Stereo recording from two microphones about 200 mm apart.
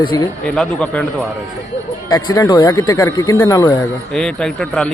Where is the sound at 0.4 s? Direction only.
5° left (ahead or behind).